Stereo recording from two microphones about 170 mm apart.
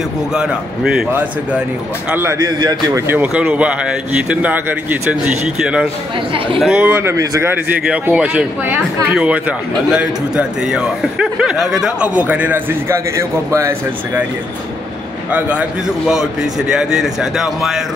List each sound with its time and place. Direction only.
0.3 s speech: 5° right (ahead or behind); by 3.0 s 25° right (ahead or behind)
3.1 s speech: 10° right (ahead or behind)
7.9 s speech: 5° right (ahead or behind)
15.3 s speech: 5° right (ahead or behind)